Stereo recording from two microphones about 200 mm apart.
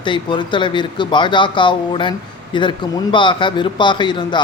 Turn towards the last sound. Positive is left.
turn(degrees=20)  # may be behind; listen again after turning